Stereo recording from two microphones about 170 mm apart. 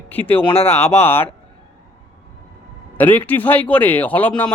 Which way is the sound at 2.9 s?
10° left (ahead or behind).